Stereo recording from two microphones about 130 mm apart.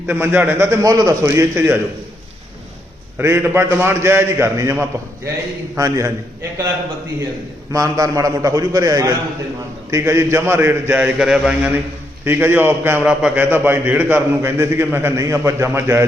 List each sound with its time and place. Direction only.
0.1 s a man's voice: 15° right (ahead or behind)
3.2 s a man's voice: 15° right (ahead or behind)
7.7 s a man's voice: 25° right (ahead or behind)